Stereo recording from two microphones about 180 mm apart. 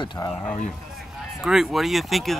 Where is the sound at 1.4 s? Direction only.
5° right (ahead or behind).